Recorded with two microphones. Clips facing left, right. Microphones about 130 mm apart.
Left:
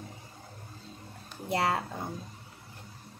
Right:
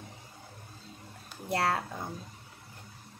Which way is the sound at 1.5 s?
15° left (ahead or behind).